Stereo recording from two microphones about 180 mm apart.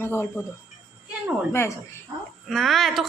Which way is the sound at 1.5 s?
15° left (ahead or behind).